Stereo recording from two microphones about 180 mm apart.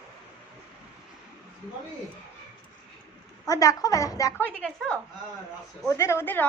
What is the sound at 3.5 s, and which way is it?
A woman's voice, 20° left (ahead or behind).